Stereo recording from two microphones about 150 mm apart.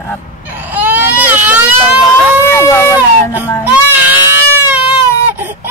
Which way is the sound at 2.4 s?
15° left (ahead or behind).